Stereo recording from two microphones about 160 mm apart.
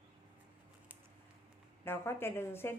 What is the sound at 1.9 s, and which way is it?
Speech, 15° left (ahead or behind).